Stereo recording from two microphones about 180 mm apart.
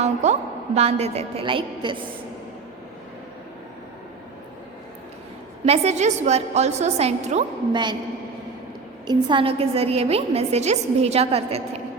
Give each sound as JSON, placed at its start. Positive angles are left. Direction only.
{"t": 0.0, "sound": "a woman's voice", "side_deg": -40}
{"t": 5.6, "sound": "a woman's voice", "side_deg": -35}
{"t": 7.7, "sound": "a man's voice", "side_deg": -25}
{"t": 9.0, "sound": "a woman's voice", "side_deg": -30}